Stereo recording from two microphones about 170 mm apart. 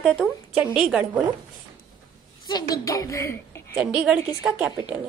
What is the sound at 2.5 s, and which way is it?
A woman's voice, 25° left (ahead or behind).